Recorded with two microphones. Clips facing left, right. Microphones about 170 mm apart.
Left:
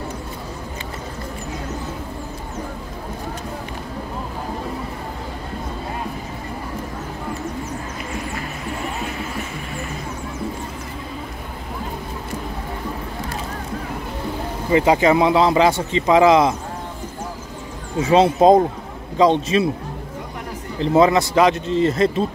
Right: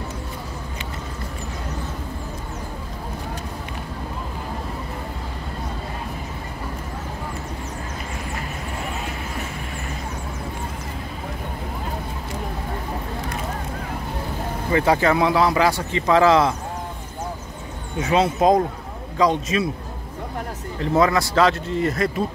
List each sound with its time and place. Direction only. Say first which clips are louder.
14.7 s speech: left 3 dB; 15° left (ahead or behind)
17.9 s speech: left 5 dB; 30° left (ahead or behind)
20.8 s speech: left 4 dB; 20° left (ahead or behind)